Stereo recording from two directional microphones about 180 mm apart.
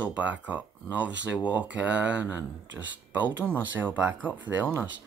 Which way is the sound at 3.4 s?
10° right (ahead or behind).